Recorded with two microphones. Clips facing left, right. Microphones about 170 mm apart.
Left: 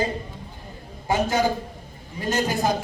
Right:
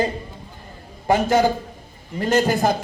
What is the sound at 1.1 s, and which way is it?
A man's voice, 55° right (ahead or behind).